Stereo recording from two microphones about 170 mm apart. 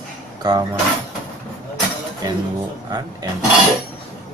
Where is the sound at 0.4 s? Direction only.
25° right (ahead or behind).